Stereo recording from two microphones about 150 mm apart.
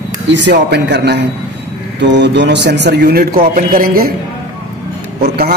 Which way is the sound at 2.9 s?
90° right.